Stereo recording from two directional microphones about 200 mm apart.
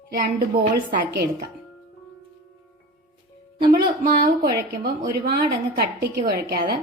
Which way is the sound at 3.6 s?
45° right (ahead or behind).